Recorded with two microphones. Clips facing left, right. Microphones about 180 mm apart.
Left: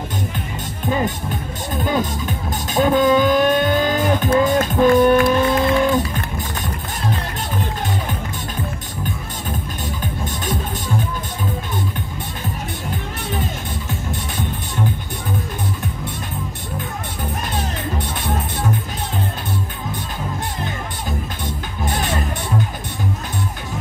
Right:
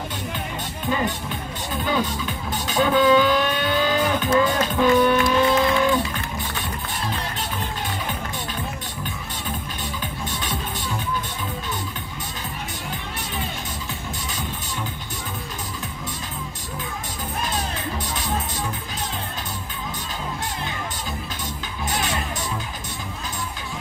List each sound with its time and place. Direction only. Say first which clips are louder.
1.9 s speech: left 3 dB; 45° left (ahead or behind)